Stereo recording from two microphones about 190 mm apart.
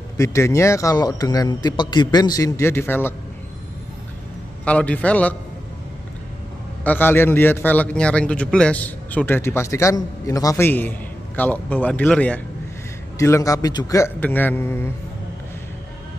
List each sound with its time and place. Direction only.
0.2 s a man's voice: 15° left (ahead or behind)
4.6 s a man's voice: 5° left (ahead or behind)
6.8 s a man's voice: 10° left (ahead or behind)